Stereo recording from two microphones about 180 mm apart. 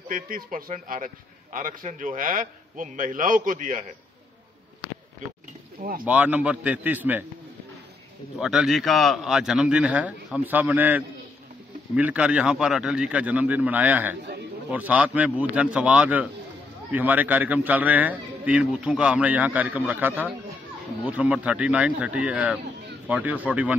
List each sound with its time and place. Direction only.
0.1 s a man's voice: 50° right (ahead or behind)
5.8 s speech: 50° right (ahead or behind)
6.0 s a man's voice: 10° right (ahead or behind)
8.4 s a man's voice: 5° right (ahead or behind)